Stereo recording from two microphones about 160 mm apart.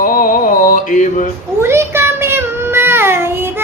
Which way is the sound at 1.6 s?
15° right (ahead or behind).